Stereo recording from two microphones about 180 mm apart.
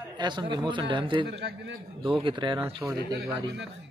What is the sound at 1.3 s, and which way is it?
Speech, 75° right (ahead or behind).